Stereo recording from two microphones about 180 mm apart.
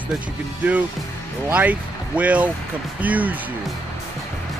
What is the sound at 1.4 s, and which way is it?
Speech, 10° right (ahead or behind).